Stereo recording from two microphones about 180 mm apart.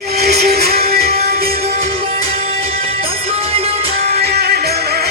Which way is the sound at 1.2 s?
60° right (ahead or behind).